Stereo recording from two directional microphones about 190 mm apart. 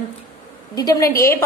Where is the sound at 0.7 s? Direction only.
20° left (ahead or behind).